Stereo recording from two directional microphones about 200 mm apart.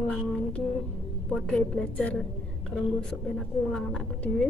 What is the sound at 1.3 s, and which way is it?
Speech, 5° left (ahead or behind).